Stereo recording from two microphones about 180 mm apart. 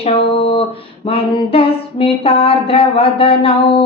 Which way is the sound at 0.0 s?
35° left (ahead or behind).